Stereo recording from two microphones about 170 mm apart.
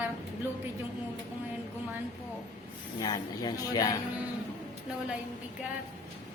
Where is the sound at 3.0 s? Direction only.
20° left (ahead or behind).